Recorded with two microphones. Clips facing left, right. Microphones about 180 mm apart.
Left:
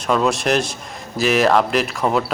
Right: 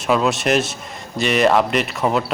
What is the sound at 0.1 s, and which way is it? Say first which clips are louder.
Speech: even; centre (ahead or behind).